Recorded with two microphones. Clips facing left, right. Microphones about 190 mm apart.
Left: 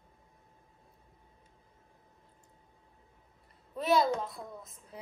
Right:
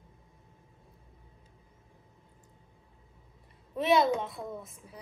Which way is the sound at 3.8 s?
Centre (ahead or behind).